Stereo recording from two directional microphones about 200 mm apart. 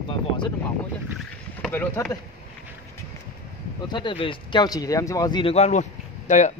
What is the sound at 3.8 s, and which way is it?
Speech, 25° left (ahead or behind).